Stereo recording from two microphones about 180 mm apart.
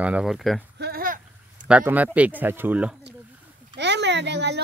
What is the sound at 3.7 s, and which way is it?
Speech, 75° right (ahead or behind).